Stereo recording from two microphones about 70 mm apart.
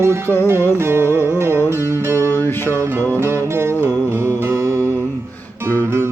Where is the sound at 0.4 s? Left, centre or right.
Right.